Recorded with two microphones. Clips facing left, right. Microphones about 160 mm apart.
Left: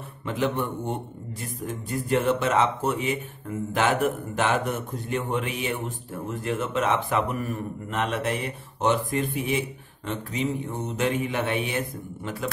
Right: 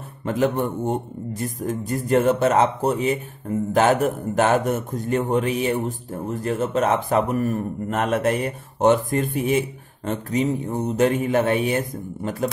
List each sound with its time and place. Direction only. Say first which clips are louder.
0.2 s a man's voice: right 5 dB; 45° right (ahead or behind)